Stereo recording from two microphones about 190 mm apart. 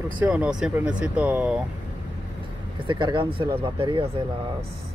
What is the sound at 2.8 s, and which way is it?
Speech, 25° right (ahead or behind).